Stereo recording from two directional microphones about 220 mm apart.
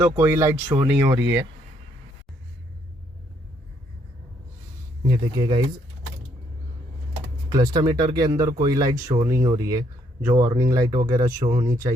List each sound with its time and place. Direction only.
0.0 s speech: 10° right (ahead or behind)
5.0 s speech: 20° right (ahead or behind)
7.5 s speech: 20° right (ahead or behind)